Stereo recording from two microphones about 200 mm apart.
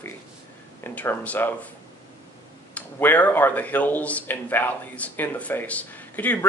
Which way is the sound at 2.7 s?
10° left (ahead or behind).